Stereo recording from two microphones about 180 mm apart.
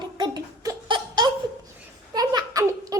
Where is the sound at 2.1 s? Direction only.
20° right (ahead or behind).